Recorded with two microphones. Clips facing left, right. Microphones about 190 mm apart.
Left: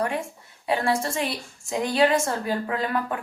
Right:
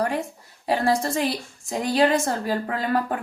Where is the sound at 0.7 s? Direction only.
40° right (ahead or behind).